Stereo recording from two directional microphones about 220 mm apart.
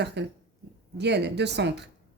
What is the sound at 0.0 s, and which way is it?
Speech, 50° right (ahead or behind).